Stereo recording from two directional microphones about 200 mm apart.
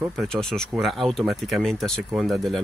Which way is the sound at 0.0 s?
Centre (ahead or behind).